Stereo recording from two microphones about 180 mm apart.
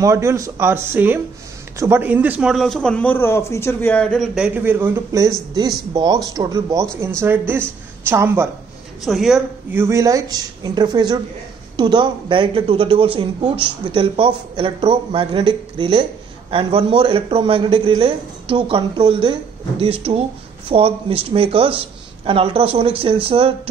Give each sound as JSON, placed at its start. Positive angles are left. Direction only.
{"t": 0.0, "sound": "a man's voice", "side_deg": -15}
{"t": 9.0, "sound": "speech", "side_deg": 0}
{"t": 9.8, "sound": "a man's voice", "side_deg": -15}